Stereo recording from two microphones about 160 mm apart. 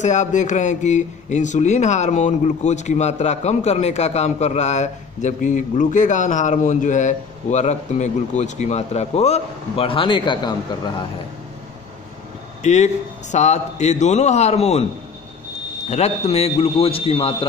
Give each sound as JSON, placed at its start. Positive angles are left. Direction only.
{"t": 0.0, "sound": "speech", "side_deg": 50}
{"t": 12.6, "sound": "speech", "side_deg": 45}
{"t": 15.9, "sound": "speech", "side_deg": 40}